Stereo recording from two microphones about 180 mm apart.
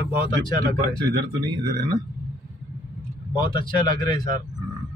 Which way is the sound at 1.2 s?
25° right (ahead or behind).